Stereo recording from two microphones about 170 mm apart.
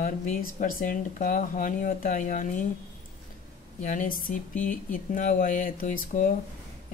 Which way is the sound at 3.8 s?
50° left (ahead or behind).